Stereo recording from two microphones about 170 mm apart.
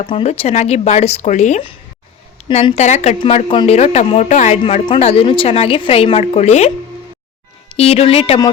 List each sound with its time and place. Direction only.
0.0 s a woman's voice: 35° left (ahead or behind)
7.7 s a woman's voice: 35° left (ahead or behind)